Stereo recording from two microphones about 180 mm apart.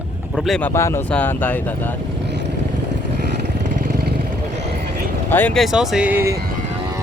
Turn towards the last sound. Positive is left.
turn(degrees=-10)  # may be behind; listen again after turning